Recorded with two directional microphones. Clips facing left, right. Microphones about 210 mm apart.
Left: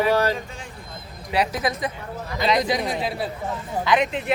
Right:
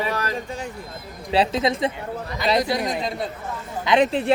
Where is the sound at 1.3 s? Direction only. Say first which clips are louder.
Right 3 dB; 25° right (ahead or behind).